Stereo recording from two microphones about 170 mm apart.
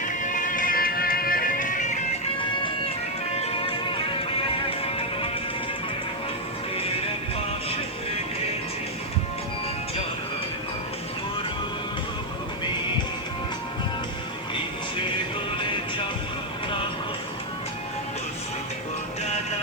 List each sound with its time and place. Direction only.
0.0 s music: 50° left (ahead or behind)
3.3 s music: 35° left (ahead or behind)